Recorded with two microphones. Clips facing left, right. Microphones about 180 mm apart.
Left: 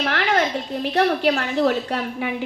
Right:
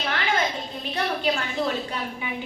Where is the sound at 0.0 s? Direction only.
70° left (ahead or behind).